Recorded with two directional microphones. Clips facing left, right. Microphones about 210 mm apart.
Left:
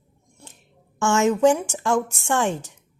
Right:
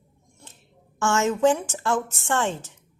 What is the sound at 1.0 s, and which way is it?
A woman's voice, 15° left (ahead or behind).